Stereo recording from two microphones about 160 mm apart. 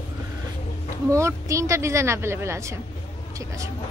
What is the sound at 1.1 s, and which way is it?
A woman's voice, 20° right (ahead or behind).